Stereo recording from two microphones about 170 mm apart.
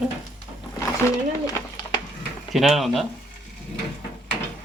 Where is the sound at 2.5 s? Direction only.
Centre (ahead or behind).